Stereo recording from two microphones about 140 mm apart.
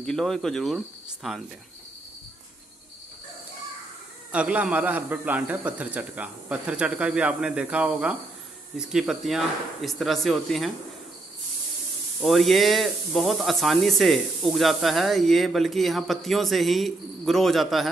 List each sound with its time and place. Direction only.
0.0 s speech: 5° left (ahead or behind)
4.3 s a man's voice: 10° right (ahead or behind)
12.2 s speech: centre (ahead or behind)